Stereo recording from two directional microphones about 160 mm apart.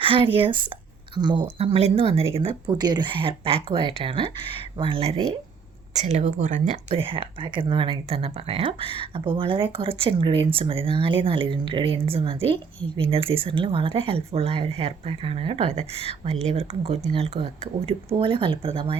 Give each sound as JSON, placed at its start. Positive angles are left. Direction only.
{"t": 0.0, "sound": "speech", "side_deg": -35}
{"t": 6.0, "sound": "speech", "side_deg": -45}
{"t": 6.9, "sound": "speech", "side_deg": -35}